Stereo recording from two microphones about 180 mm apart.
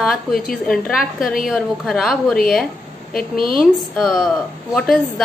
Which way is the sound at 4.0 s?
Centre (ahead or behind).